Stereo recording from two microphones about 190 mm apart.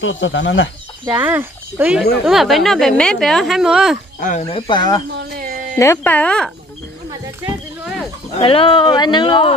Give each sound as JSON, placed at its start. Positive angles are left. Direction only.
{"t": 0.0, "sound": "speech", "side_deg": 80}
{"t": 1.0, "sound": "speech", "side_deg": -10}
{"t": 4.2, "sound": "speech", "side_deg": 40}
{"t": 5.1, "sound": "a sound", "side_deg": -50}
{"t": 5.8, "sound": "speech", "side_deg": 15}
{"t": 8.4, "sound": "speech", "side_deg": 30}